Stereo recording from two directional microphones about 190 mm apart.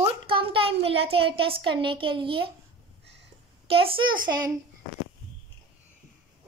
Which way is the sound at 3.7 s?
30° right (ahead or behind).